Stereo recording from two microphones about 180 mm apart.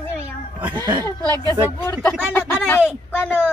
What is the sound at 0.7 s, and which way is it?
Speech, 20° right (ahead or behind).